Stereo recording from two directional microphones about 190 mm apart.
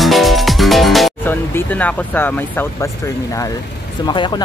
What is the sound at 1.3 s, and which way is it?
Speech, 10° left (ahead or behind).